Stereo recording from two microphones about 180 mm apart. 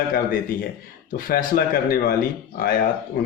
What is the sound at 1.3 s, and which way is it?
Speech, 55° left (ahead or behind).